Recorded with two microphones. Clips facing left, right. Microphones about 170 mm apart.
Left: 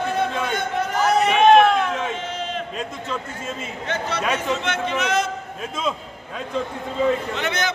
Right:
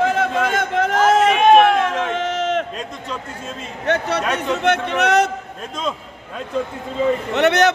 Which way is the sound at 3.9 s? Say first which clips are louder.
Right 5 dB; 65° right (ahead or behind).